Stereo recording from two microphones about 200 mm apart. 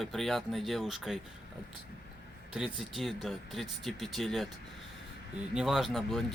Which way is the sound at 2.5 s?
Centre (ahead or behind).